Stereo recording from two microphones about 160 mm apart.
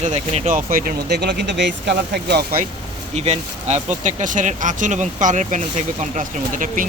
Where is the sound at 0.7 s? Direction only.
65° right (ahead or behind); by 2.4 s 90° right.